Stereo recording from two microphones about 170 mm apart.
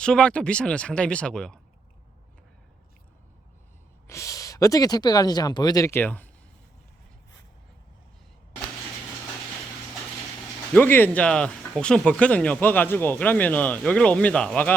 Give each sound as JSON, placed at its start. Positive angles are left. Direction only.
{"t": 0.0, "sound": "speech", "side_deg": 5}
{"t": 4.0, "sound": "speech", "side_deg": 15}
{"t": 10.8, "sound": "speech", "side_deg": 10}